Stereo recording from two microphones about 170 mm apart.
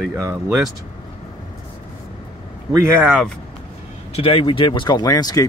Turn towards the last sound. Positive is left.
turn(degrees=20)  # may be behind; listen again after turning